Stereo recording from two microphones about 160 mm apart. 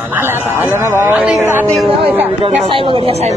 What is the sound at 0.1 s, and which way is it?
Speech, 15° right (ahead or behind).